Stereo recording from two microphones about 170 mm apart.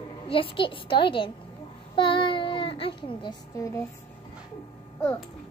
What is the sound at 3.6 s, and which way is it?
Speech, 15° left (ahead or behind).